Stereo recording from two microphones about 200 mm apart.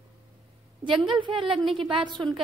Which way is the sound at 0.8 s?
25° right (ahead or behind).